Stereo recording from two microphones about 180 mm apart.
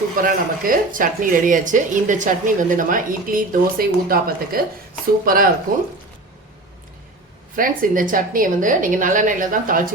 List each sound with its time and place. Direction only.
0.2 s speech: 50° right (ahead or behind)
7.5 s speech: 50° right (ahead or behind)